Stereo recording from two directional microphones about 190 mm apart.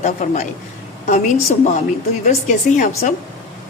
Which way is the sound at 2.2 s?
40° left (ahead or behind).